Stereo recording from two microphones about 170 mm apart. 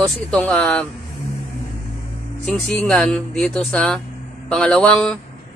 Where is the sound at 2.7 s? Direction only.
5° left (ahead or behind).